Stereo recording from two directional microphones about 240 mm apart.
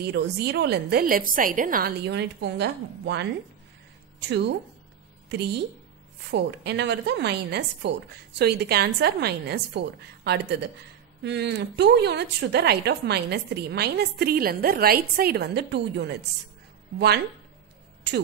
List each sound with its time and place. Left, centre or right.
0.0 s a woman's voice: right
4.3 s a woman's voice: right
18.1 s a sound: right